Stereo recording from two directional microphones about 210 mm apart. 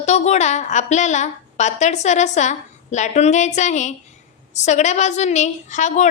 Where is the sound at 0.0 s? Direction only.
30° left (ahead or behind).